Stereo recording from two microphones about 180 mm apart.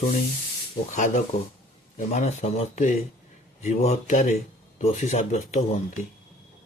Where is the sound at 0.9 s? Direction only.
45° left (ahead or behind).